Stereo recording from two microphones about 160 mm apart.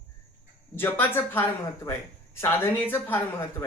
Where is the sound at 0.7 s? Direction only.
15° left (ahead or behind).